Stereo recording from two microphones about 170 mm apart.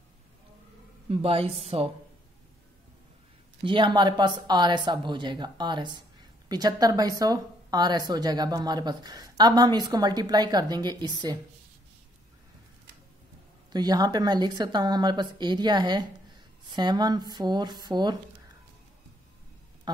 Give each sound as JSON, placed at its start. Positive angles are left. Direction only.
{"t": 1.0, "sound": "a woman's voice", "side_deg": -35}
{"t": 3.6, "sound": "a woman's voice", "side_deg": -25}
{"t": 13.7, "sound": "a woman's voice", "side_deg": -25}